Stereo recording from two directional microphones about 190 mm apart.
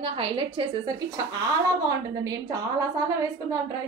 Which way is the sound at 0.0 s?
30° right (ahead or behind).